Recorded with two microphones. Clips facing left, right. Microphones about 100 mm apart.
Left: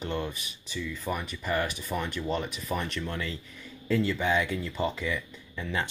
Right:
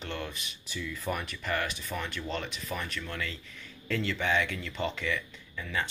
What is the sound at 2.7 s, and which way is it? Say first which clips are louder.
Speech: left 5 dB; 25° left (ahead or behind).